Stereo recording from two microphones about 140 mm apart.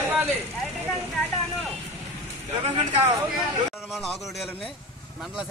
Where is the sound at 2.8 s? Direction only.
40° right (ahead or behind).